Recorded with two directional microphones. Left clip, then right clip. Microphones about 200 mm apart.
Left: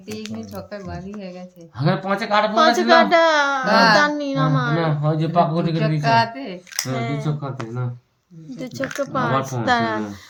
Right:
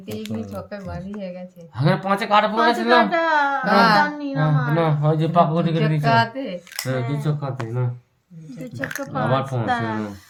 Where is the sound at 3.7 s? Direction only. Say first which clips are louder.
Left 1 dB; 10° left (ahead or behind).